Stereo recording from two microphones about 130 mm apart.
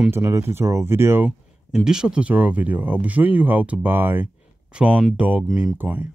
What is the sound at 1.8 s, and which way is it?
Speech, 5° right (ahead or behind).